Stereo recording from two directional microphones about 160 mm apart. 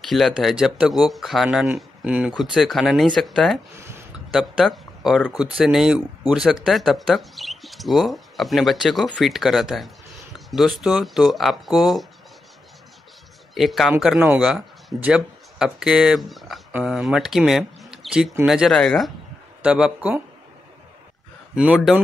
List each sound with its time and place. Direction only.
0.1 s speech: centre (ahead or behind)
3.7 s speech: 15° right (ahead or behind)
4.3 s speech: centre (ahead or behind)
13.6 s speech: centre (ahead or behind)
21.5 s speech: 5° right (ahead or behind)